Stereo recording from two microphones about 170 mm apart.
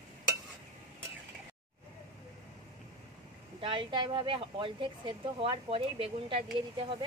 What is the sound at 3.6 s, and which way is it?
A woman's voice, 30° right (ahead or behind).